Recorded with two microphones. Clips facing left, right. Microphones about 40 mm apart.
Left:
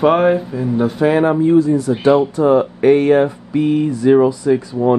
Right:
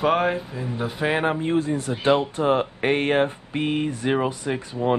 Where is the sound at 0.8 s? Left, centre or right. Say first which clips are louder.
Left 8 dB; centre.